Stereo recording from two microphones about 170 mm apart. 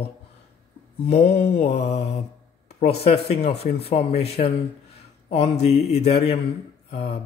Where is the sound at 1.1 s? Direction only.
40° left (ahead or behind).